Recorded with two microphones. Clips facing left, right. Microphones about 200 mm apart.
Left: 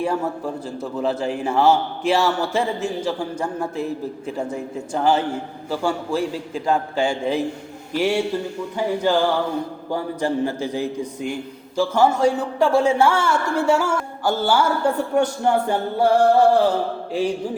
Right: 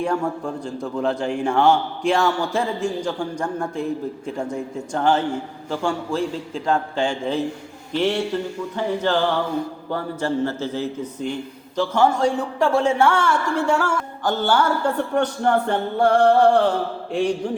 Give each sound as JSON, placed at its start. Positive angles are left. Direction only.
{"t": 0.0, "sound": "a man's voice", "side_deg": 5}